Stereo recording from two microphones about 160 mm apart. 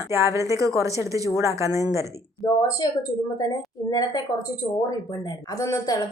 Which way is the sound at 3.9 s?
25° left (ahead or behind).